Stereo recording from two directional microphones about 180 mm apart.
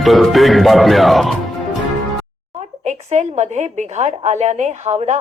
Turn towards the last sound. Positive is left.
turn(degrees=-40)  # may be behind; listen again after turning